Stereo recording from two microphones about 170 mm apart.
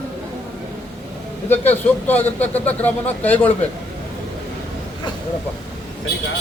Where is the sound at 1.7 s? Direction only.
10° left (ahead or behind).